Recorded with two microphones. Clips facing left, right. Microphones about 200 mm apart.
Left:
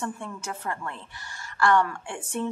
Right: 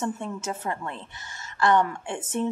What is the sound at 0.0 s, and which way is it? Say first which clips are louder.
A woman's voice: right 4 dB; 20° right (ahead or behind).